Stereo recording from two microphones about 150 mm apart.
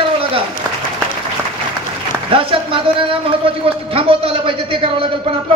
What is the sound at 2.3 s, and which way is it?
A man's voice, 35° right (ahead or behind).